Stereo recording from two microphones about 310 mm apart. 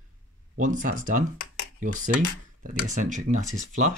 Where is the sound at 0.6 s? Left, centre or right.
Right.